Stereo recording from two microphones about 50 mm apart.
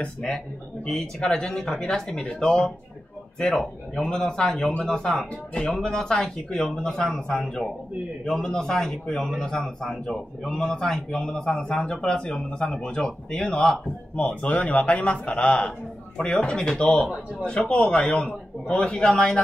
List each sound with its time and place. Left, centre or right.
0.2 s speech: centre
14.2 s a man's voice: left
18.2 s speech: centre